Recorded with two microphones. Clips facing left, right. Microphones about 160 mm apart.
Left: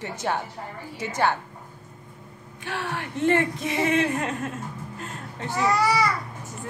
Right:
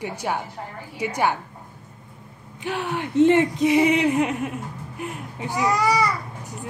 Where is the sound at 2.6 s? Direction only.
20° right (ahead or behind).